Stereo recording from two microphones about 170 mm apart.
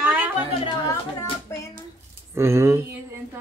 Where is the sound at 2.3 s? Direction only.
15° right (ahead or behind).